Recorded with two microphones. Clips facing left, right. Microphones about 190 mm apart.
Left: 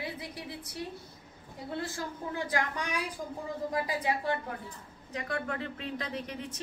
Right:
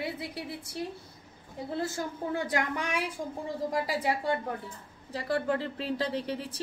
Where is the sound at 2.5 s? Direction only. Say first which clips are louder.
Right 2 dB; 25° right (ahead or behind).